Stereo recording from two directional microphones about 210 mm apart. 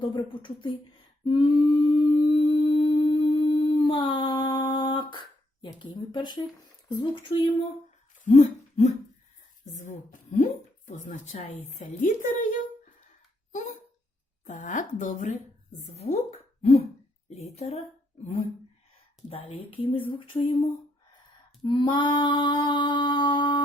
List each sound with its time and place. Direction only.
0.0 s speech: 25° left (ahead or behind)
1.2 s humming: 20° left (ahead or behind)
5.8 s speech: 20° left (ahead or behind)
8.2 s a sound: 35° left (ahead or behind)
9.9 s a woman's voice: 35° left (ahead or behind)
13.5 s a sound: 35° left (ahead or behind)
14.4 s a woman's voice: 35° left (ahead or behind)
19.3 s speech: 30° left (ahead or behind)
21.6 s female singing: 20° left (ahead or behind)